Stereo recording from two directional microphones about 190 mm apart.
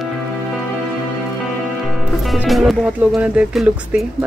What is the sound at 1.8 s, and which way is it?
Speech, centre (ahead or behind).